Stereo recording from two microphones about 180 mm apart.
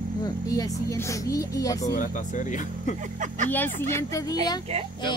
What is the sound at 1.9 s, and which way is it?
Speech, 45° left (ahead or behind).